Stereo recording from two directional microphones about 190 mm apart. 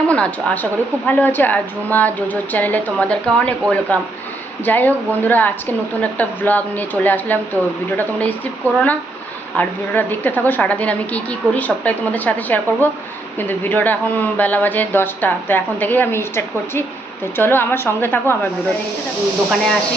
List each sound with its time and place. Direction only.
0.1 s a woman's voice: 5° left (ahead or behind)